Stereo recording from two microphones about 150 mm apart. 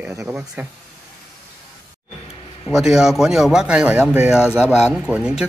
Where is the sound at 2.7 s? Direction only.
5° right (ahead or behind).